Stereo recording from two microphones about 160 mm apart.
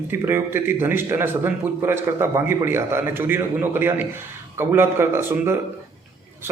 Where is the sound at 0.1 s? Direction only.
15° right (ahead or behind).